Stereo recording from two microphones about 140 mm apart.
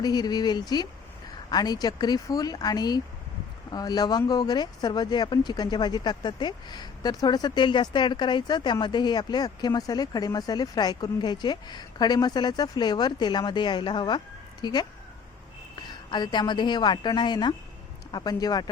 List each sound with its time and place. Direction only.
0.0 s speech: 30° left (ahead or behind)
15.9 s speech: 30° left (ahead or behind)